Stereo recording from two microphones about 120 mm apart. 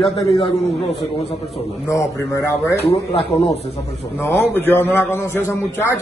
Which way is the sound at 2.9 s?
60° left (ahead or behind).